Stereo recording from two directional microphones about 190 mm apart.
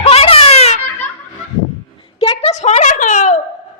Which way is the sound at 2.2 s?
30° left (ahead or behind).